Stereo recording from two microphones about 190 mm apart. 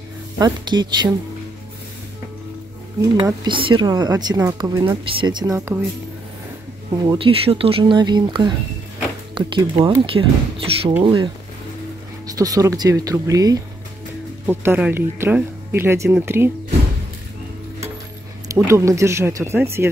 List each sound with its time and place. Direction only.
0.4 s speech: 25° right (ahead or behind)
3.3 s speech: 25° right (ahead or behind)
7.0 s speech: 25° right (ahead or behind)
18.5 s speech: 15° right (ahead or behind)